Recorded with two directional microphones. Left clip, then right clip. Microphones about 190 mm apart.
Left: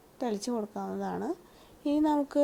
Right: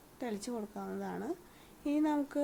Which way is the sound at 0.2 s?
25° left (ahead or behind).